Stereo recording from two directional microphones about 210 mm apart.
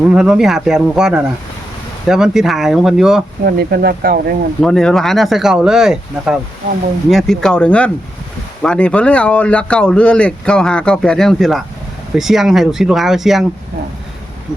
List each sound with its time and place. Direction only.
0.0 s speech: 5° right (ahead or behind)
3.4 s speech: 50° right (ahead or behind)
4.6 s speech: 5° left (ahead or behind)